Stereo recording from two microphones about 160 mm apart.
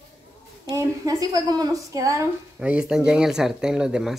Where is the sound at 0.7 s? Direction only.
20° right (ahead or behind).